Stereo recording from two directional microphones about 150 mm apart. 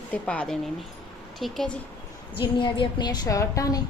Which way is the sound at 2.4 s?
35° left (ahead or behind).